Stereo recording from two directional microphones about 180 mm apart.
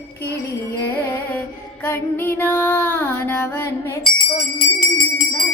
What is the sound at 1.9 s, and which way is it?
Music, 15° left (ahead or behind).